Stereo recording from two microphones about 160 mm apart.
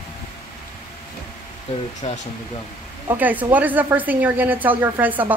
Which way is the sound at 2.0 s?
40° left (ahead or behind).